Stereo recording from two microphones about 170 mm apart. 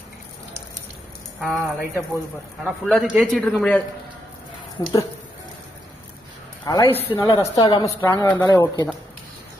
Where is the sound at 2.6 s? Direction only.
5° right (ahead or behind).